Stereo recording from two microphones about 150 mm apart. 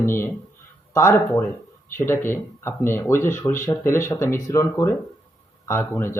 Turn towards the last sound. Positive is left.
turn(degrees=15)  # may be behind; listen again after turning